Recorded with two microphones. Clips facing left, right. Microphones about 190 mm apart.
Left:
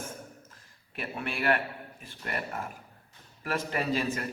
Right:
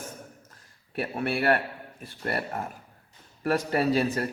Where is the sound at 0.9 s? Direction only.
40° right (ahead or behind).